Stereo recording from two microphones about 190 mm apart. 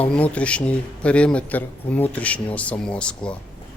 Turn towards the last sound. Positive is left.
turn(degrees=5)  # may be behind; listen again after turning